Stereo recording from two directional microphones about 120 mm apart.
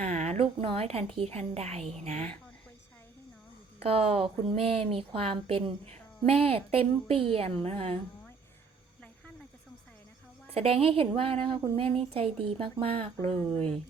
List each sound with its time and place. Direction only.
0.0 s a woman's voice: 65° right (ahead or behind)
3.8 s a woman's voice: 55° right (ahead or behind)
10.5 s a woman's voice: 55° right (ahead or behind); by 11.8 s 35° right (ahead or behind)
12.1 s a woman's voice: 50° right (ahead or behind)